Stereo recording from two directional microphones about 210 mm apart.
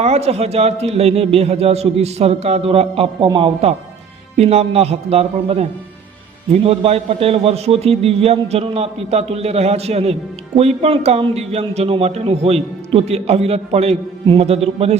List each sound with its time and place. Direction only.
0.0 s a man's voice: 30° right (ahead or behind)